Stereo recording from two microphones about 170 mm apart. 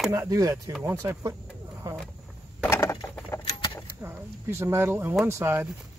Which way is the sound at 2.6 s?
15° left (ahead or behind).